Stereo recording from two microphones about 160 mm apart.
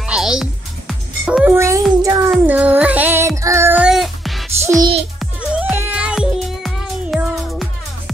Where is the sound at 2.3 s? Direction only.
10° right (ahead or behind).